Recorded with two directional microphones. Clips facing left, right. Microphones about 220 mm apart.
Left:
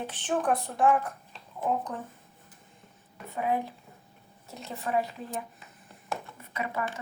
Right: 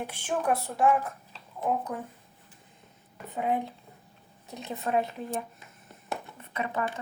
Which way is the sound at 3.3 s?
20° right (ahead or behind).